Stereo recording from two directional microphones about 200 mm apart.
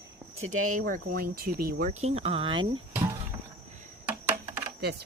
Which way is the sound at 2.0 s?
30° right (ahead or behind).